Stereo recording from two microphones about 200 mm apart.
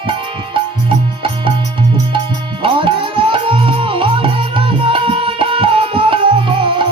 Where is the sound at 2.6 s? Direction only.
25° right (ahead or behind).